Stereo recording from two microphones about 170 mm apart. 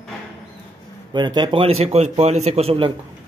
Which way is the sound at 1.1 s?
25° right (ahead or behind).